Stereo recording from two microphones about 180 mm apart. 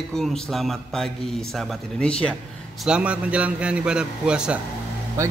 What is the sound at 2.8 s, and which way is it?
A man's voice, 5° right (ahead or behind).